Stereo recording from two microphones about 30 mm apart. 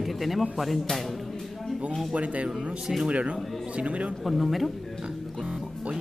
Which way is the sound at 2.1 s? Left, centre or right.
Right.